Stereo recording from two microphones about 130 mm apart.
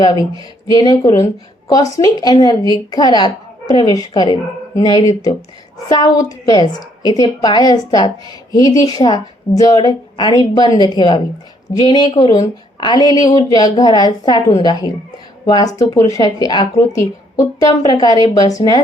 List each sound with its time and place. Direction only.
0.7 s speech: 30° left (ahead or behind)